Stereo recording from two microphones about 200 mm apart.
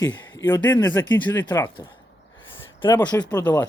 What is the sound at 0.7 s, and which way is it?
A man's voice, 10° left (ahead or behind).